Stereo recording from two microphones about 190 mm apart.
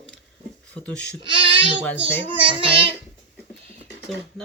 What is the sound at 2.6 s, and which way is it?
Child singing, 30° right (ahead or behind).